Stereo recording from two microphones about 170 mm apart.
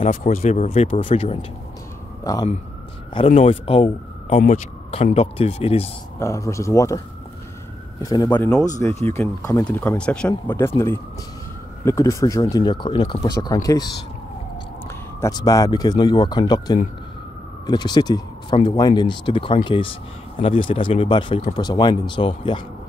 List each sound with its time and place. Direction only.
0.0 s speech: 55° left (ahead or behind)
0.4 s speech: 40° left (ahead or behind)
2.3 s speech: 20° left (ahead or behind)
3.2 s speech: 40° left (ahead or behind)
6.1 s speech: 20° left (ahead or behind)
8.1 s speech: 25° left (ahead or behind)
8.4 s speech: 5° left (ahead or behind)
11.8 s speech: 15° left (ahead or behind)
15.1 s speech: 20° left (ahead or behind)